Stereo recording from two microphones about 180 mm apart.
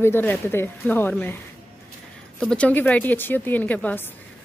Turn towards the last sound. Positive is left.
turn(degrees=10)  # may be behind; listen again after turning